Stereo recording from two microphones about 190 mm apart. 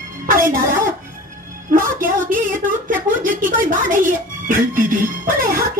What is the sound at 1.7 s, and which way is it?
Music, 45° right (ahead or behind).